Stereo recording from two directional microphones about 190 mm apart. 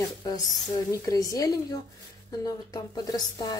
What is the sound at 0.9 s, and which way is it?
Speech, 20° left (ahead or behind).